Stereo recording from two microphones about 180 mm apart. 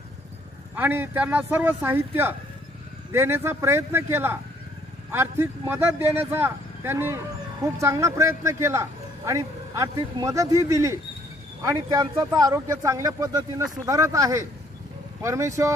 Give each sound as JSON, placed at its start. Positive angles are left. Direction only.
{"t": 0.7, "sound": "speech", "side_deg": -10}